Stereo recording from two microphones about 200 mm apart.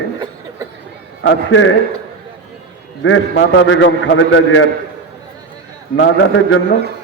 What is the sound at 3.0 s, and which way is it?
A man's voice, 75° left (ahead or behind).